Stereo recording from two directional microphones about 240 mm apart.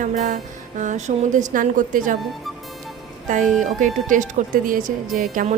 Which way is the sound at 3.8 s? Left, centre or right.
Right.